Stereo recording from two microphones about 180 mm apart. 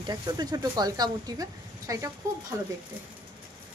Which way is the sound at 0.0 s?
20° right (ahead or behind).